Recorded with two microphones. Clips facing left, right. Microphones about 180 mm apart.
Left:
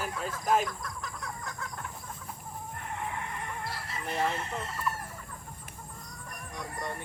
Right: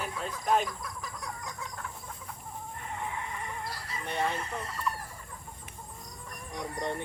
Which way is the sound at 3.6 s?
Centre (ahead or behind).